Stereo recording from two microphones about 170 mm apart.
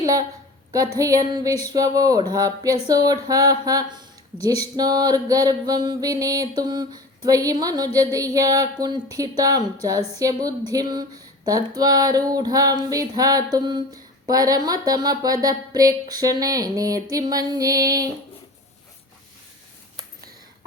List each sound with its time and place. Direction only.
0.0 s a woman's voice: 20° right (ahead or behind)
0.9 s female singing: 20° right (ahead or behind)